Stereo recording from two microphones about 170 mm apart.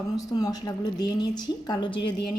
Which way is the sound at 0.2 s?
20° left (ahead or behind).